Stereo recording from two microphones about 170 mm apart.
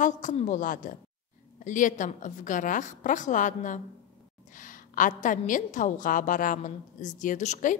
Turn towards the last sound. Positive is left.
turn(degrees=45)  # may be behind; listen again after turning